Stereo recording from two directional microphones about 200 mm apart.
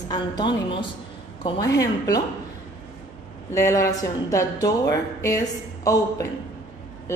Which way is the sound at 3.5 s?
15° left (ahead or behind).